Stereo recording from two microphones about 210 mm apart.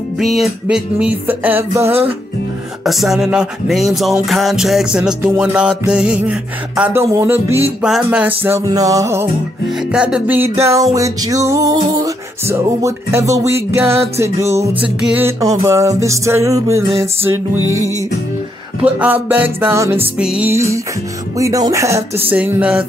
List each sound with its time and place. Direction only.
0.2 s music: centre (ahead or behind)
17.6 s music: 80° right
18.8 s music: 5° right (ahead or behind)